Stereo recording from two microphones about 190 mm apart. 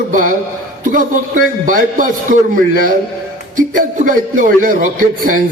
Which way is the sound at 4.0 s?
45° right (ahead or behind).